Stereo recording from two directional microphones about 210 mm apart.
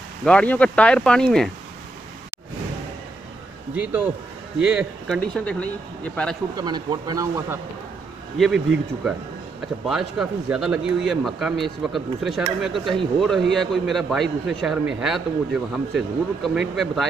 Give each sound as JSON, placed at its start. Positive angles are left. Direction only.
{"t": 0.2, "sound": "speech", "side_deg": 5}
{"t": 4.6, "sound": "speech", "side_deg": -5}
{"t": 6.5, "sound": "speech", "side_deg": -20}